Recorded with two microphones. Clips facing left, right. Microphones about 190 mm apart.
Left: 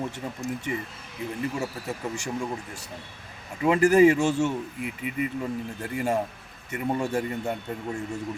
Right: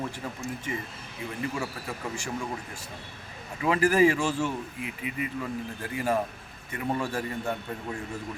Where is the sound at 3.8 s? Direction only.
25° left (ahead or behind).